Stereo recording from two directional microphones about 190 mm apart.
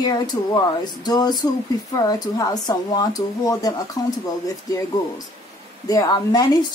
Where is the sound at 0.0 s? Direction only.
20° left (ahead or behind).